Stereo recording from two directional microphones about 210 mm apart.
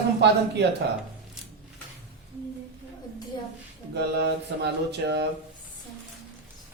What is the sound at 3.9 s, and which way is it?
Mantra, 55° right (ahead or behind).